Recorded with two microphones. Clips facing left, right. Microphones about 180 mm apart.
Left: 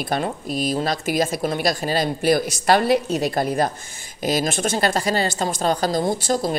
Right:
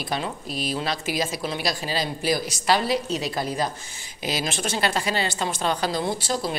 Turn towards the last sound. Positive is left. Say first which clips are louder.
# left 5 dB
turn(degrees=45)  # may be behind; listen again after turning